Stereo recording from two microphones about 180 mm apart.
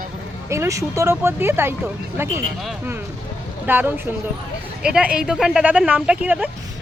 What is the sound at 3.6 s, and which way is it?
Speech, 10° right (ahead or behind).